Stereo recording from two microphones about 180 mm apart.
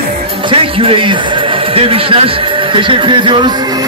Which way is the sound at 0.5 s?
30° right (ahead or behind).